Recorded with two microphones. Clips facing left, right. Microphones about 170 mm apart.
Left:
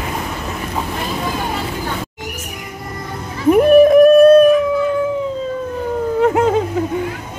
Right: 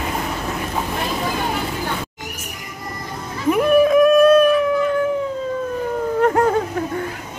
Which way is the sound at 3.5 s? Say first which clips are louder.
Left 6 dB; 45° left (ahead or behind).